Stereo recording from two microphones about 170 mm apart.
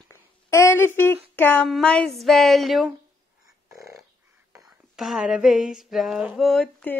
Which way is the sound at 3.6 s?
15° right (ahead or behind).